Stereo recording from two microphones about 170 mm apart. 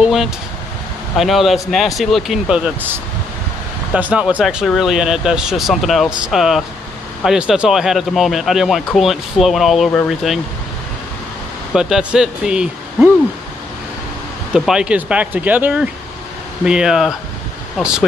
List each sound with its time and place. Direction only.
0.0 s vehicle: centre (ahead or behind)
1.1 s speech: centre (ahead or behind)
3.9 s speech: 5° right (ahead or behind)
11.7 s speech: 5° right (ahead or behind)
14.5 s speech: 5° right (ahead or behind)